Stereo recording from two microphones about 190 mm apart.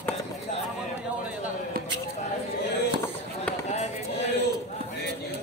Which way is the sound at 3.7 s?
35° left (ahead or behind).